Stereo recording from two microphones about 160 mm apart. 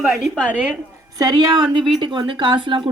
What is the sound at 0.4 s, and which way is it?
Speech, 10° right (ahead or behind).